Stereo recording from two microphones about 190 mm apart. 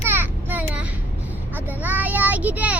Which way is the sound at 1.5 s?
10° right (ahead or behind).